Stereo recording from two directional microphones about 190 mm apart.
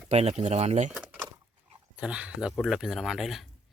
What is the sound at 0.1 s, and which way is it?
Speech, 35° right (ahead or behind).